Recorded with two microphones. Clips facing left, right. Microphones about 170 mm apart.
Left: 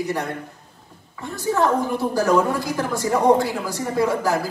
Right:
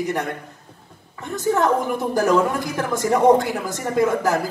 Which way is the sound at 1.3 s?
20° right (ahead or behind).